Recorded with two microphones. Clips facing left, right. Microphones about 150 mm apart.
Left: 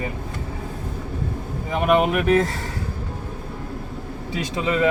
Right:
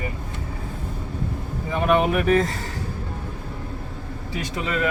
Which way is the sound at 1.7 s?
15° left (ahead or behind).